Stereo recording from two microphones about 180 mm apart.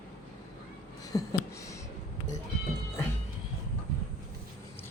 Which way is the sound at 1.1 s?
20° left (ahead or behind).